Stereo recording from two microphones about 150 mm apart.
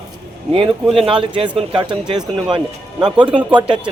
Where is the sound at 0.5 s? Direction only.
35° right (ahead or behind).